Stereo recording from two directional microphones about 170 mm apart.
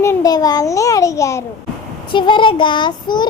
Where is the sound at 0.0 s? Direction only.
20° left (ahead or behind).